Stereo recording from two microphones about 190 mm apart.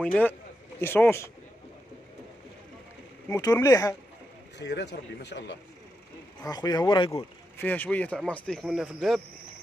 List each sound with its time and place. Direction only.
0.0 s speech: 10° left (ahead or behind)
3.3 s speech: 20° left (ahead or behind)
4.6 s speech: 65° left (ahead or behind)
6.4 s speech: 20° left (ahead or behind); by 9.2 s centre (ahead or behind)